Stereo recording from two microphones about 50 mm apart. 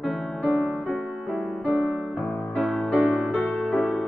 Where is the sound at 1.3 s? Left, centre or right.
Centre.